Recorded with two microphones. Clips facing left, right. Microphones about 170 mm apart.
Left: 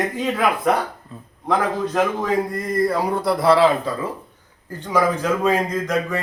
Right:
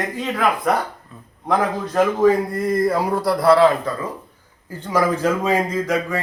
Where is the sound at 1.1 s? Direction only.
30° left (ahead or behind).